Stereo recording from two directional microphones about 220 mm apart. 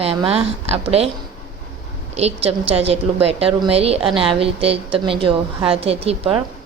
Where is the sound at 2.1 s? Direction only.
25° right (ahead or behind).